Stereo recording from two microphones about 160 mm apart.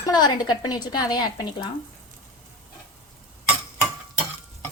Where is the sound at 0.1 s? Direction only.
25° left (ahead or behind).